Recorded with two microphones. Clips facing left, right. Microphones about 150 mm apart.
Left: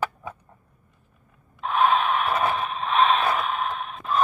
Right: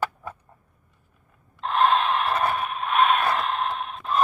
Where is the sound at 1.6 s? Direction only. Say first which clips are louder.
Even; 5° left (ahead or behind).